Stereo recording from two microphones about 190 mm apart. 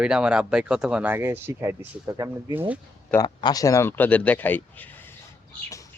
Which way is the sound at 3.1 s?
20° left (ahead or behind).